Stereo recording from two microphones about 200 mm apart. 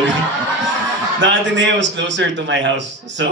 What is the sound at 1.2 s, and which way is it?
A man's voice, 65° right (ahead or behind).